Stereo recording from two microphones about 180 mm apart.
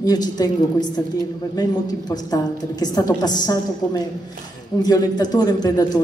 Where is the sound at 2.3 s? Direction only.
20° left (ahead or behind).